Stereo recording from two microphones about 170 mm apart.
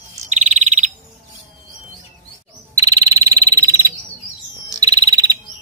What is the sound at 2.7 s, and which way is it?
Insect, 20° right (ahead or behind).